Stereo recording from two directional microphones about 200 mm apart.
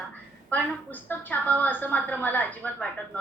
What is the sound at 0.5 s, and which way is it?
A woman's voice, 10° left (ahead or behind).